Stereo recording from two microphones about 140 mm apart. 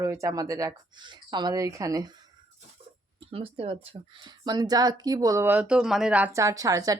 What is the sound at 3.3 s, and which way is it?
Speech, 45° right (ahead or behind).